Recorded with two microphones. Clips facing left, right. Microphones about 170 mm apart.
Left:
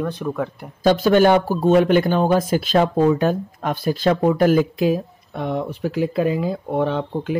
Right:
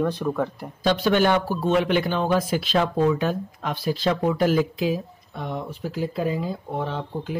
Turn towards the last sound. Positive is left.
turn(degrees=70)  # may be behind; listen again after turning